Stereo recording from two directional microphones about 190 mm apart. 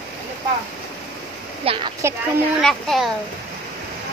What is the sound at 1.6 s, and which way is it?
Speech, 30° right (ahead or behind).